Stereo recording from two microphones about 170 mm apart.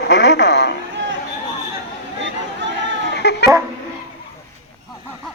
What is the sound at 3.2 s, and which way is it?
Dog, 80° left.